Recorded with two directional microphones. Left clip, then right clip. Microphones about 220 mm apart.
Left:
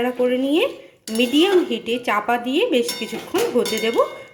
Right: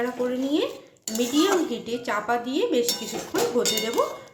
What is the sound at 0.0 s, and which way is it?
Dishes, 15° left (ahead or behind).